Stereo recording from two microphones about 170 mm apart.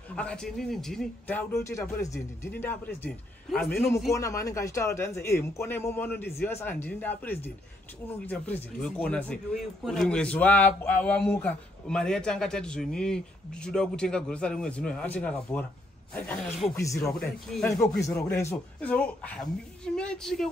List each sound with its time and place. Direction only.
0.1 s a man's voice: 5° left (ahead or behind)
4.1 s a man's voice: 20° left (ahead or behind)
17.0 s a man's voice: 5° left (ahead or behind)